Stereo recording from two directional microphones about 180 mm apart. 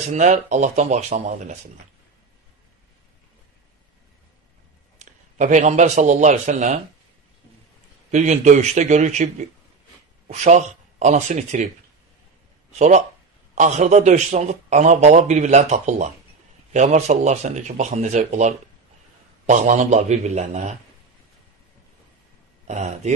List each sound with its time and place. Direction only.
0.1 s a man's voice: 40° right (ahead or behind)
4.9 s a man's voice: 45° right (ahead or behind)
8.1 s a man's voice: 40° right (ahead or behind)
12.7 s a man's voice: 40° right (ahead or behind)
22.7 s a man's voice: 40° right (ahead or behind)